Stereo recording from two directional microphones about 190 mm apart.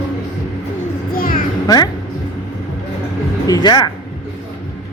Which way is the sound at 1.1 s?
50° left (ahead or behind).